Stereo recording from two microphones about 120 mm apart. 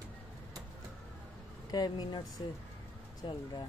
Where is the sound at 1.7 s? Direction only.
35° left (ahead or behind).